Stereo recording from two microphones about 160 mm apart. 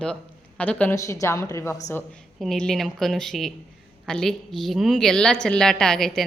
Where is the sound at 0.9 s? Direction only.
20° left (ahead or behind).